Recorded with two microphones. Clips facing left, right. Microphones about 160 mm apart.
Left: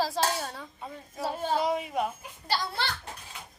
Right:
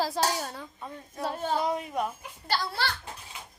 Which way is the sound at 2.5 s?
20° left (ahead or behind).